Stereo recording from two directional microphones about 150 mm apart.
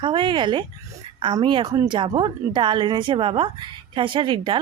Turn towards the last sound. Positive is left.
turn(degrees=-35)  # may be behind; listen again after turning